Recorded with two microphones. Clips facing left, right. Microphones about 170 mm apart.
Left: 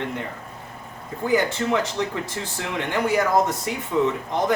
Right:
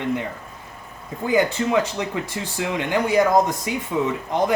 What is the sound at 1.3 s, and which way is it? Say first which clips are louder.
Speech: right 2 dB; 15° right (ahead or behind).